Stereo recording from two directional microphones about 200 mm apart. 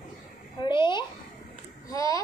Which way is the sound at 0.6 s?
25° left (ahead or behind).